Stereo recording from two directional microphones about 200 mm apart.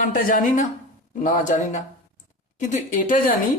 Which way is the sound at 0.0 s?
40° left (ahead or behind).